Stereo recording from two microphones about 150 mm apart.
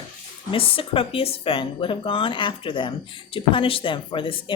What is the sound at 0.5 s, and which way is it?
Speech, 35° left (ahead or behind).